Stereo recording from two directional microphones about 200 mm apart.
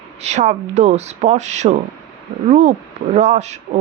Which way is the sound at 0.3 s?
35° right (ahead or behind).